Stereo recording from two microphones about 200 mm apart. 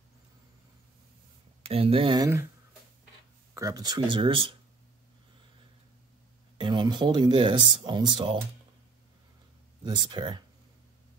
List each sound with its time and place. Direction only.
1.6 s speech: 30° right (ahead or behind)
3.5 s speech: 15° right (ahead or behind)
6.6 s speech: 20° right (ahead or behind)
9.8 s speech: 20° right (ahead or behind)